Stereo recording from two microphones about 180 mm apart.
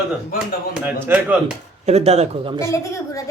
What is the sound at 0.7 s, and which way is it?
Speech, 10° right (ahead or behind).